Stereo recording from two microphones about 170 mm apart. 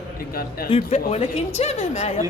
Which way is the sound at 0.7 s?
40° left (ahead or behind).